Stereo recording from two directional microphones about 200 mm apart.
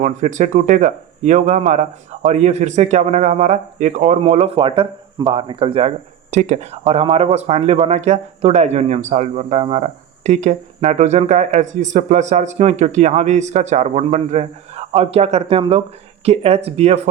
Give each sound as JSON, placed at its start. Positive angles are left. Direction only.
{"t": 0.0, "sound": "speech", "side_deg": -40}